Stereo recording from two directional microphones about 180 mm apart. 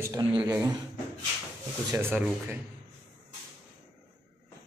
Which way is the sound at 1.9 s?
15° right (ahead or behind).